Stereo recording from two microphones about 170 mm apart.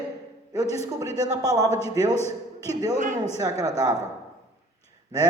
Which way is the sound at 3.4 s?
20° right (ahead or behind).